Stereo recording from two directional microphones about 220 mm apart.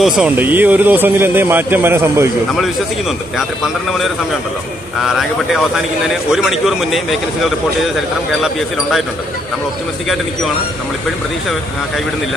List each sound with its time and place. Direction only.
0.0 s speech: 5° right (ahead or behind)
5.0 s a man's voice: centre (ahead or behind)